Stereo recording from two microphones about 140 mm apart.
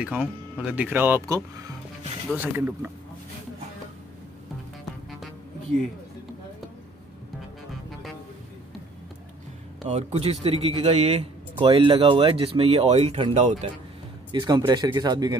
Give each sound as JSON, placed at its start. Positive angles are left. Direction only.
{"t": 0.0, "sound": "speech", "side_deg": -10}
{"t": 2.3, "sound": "speech", "side_deg": -15}
{"t": 9.8, "sound": "a man's voice", "side_deg": -45}
{"t": 11.6, "sound": "speech", "side_deg": -40}
{"t": 14.3, "sound": "speech", "side_deg": -30}